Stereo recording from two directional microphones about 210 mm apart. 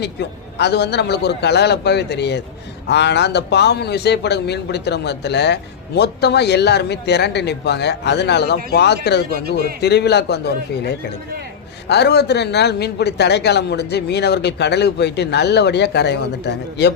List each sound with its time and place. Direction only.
0.0 s a man's voice: 50° left (ahead or behind)